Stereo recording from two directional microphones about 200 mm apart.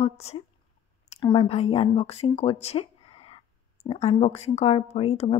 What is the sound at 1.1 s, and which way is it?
Speech, 20° left (ahead or behind).